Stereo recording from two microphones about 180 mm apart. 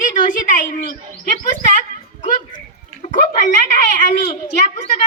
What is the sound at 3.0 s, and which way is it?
A child's voice, 45° left (ahead or behind).